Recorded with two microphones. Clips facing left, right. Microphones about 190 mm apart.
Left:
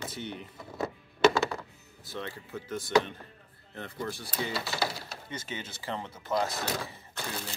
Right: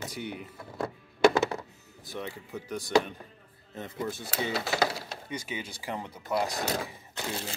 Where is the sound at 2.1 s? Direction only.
15° right (ahead or behind).